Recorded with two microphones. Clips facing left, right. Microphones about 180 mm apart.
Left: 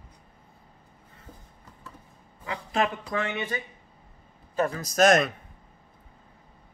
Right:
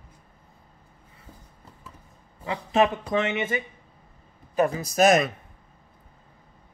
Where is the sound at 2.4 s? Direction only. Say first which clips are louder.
Right 5 dB; 20° right (ahead or behind); by 5.3 s 5° right (ahead or behind).